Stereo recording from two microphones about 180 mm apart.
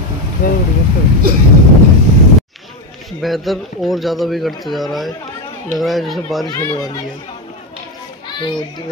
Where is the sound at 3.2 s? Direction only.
Centre (ahead or behind).